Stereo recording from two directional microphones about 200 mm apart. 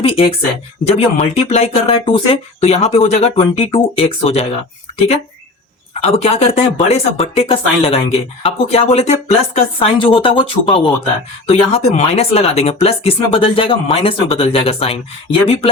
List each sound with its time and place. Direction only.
0.0 s speech: 30° left (ahead or behind)